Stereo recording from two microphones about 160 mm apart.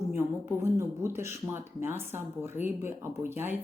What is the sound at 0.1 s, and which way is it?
A woman's voice, 15° right (ahead or behind).